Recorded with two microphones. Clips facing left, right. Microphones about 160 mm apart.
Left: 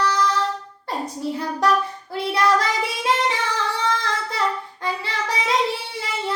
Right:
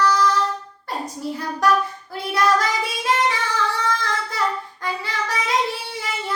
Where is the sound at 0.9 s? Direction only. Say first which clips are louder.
Left 1 dB; 25° left (ahead or behind).